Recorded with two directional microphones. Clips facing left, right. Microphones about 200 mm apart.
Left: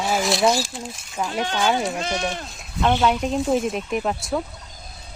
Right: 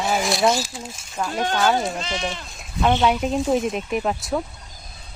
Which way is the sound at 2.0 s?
55° left (ahead or behind).